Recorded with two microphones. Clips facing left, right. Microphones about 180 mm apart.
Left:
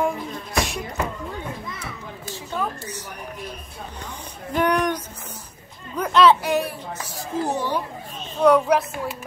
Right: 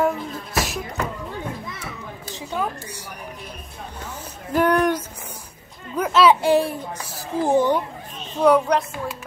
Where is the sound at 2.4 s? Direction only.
10° right (ahead or behind).